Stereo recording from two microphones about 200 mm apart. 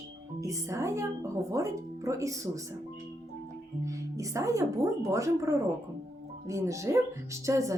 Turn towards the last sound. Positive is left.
turn(degrees=-15)  # may be behind; listen again after turning